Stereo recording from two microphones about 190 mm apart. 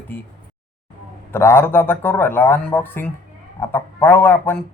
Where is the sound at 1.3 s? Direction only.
10° left (ahead or behind).